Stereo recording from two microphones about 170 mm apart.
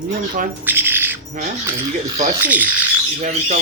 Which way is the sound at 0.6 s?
10° right (ahead or behind).